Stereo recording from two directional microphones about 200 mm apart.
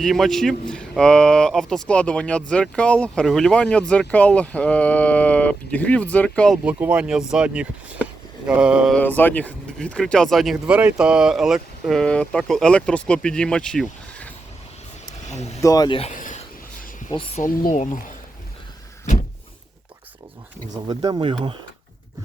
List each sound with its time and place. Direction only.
0.0 s speech: centre (ahead or behind)
6.7 s speech: 5° right (ahead or behind)
9.0 s speech: 10° left (ahead or behind)
15.3 s vehicle: 35° left (ahead or behind)
15.6 s speech: 20° left (ahead or behind)
16.1 s a sound: 40° left (ahead or behind)
17.1 s speech: 25° left (ahead or behind)
17.4 s speech: 40° left (ahead or behind)
20.8 s speech: 20° right (ahead or behind)